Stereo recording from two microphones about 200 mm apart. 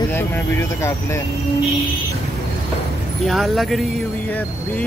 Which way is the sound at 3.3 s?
Centre (ahead or behind).